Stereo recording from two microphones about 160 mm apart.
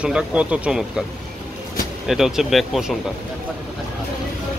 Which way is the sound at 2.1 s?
Centre (ahead or behind).